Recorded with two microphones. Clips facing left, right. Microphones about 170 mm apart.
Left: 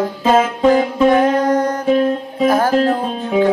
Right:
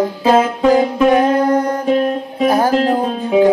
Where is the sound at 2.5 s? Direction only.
15° right (ahead or behind).